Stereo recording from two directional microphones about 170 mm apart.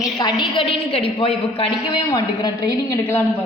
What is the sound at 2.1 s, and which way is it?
A woman's voice, 25° left (ahead or behind).